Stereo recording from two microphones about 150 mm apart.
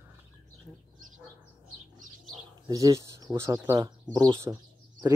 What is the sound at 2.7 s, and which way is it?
Speech, 20° right (ahead or behind).